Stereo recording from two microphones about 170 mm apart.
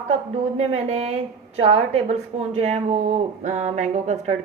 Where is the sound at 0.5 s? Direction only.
40° right (ahead or behind).